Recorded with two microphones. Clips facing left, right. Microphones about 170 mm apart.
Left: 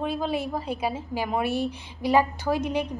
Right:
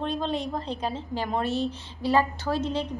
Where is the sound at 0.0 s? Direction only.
10° left (ahead or behind).